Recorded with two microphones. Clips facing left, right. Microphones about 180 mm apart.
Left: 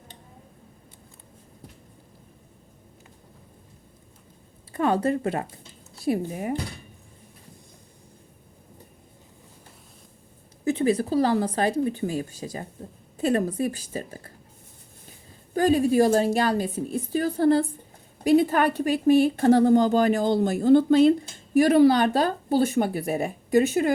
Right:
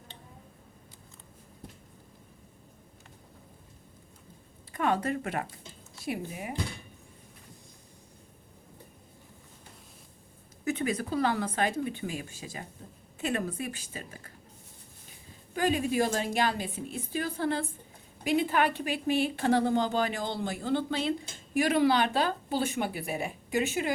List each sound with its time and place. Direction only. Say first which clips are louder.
4.7 s a woman's voice: left 6 dB; 30° left (ahead or behind)
10.6 s a woman's voice: left 8 dB; 30° left (ahead or behind)
15.5 s a woman's voice: left 8 dB; 40° left (ahead or behind)